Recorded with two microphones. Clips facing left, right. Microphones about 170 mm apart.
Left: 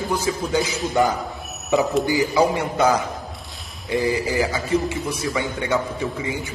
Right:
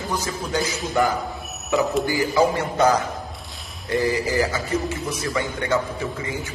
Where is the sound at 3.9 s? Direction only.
15° left (ahead or behind).